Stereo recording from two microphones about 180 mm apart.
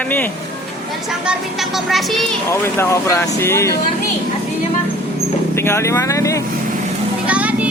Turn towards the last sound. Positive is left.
turn(degrees=-5)  # may be behind; listen again after turning